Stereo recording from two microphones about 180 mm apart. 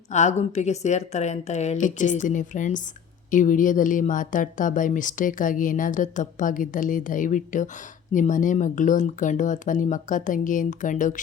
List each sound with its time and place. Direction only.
0.1 s a woman's voice: 40° left (ahead or behind)